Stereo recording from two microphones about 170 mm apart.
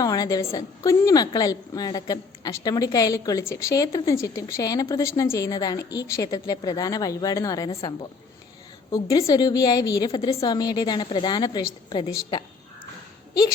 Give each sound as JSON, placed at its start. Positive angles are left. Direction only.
{"t": 0.0, "sound": "a woman's voice", "side_deg": 20}
{"t": 7.7, "sound": "a woman's voice", "side_deg": 35}
{"t": 8.9, "sound": "a woman's voice", "side_deg": 20}
{"t": 10.1, "sound": "a woman's voice", "side_deg": 30}